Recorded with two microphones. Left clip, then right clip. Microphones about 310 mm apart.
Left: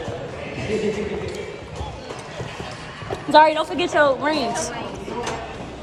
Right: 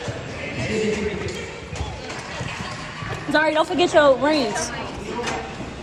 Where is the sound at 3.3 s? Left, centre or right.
Centre.